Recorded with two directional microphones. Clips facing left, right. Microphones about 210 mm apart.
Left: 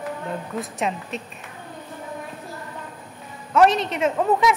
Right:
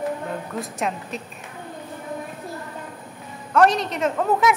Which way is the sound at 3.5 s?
5° left (ahead or behind).